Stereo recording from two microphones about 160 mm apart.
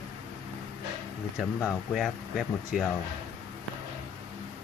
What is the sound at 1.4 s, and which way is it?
Speech, 5° right (ahead or behind).